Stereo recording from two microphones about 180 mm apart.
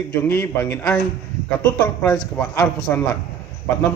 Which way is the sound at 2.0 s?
20° left (ahead or behind).